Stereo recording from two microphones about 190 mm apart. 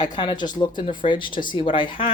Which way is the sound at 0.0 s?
25° left (ahead or behind).